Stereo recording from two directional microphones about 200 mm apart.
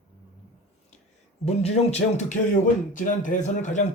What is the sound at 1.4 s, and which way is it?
Speech, 30° left (ahead or behind).